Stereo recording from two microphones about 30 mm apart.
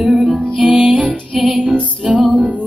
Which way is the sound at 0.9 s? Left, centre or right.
Right.